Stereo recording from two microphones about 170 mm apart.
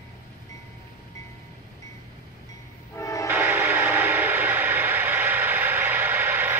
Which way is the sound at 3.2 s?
10° right (ahead or behind).